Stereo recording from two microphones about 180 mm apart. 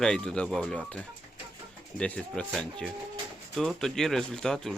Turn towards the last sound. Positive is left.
turn(degrees=5)  # may be behind; listen again after turning